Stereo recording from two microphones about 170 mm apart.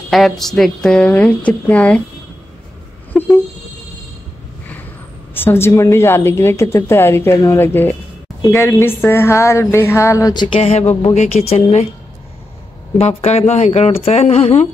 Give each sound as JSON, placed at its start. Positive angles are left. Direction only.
{"t": 0.1, "sound": "a woman's voice", "side_deg": 0}
{"t": 3.1, "sound": "a sound", "side_deg": 5}
{"t": 5.3, "sound": "a woman's voice", "side_deg": 15}
{"t": 10.6, "sound": "speech", "side_deg": 40}
{"t": 12.9, "sound": "speech", "side_deg": 40}